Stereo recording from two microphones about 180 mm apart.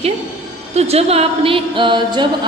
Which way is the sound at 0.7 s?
35° right (ahead or behind).